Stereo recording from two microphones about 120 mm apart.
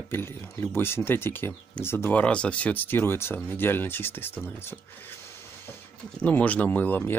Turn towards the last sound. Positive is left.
turn(degrees=15)  # may be behind; listen again after turning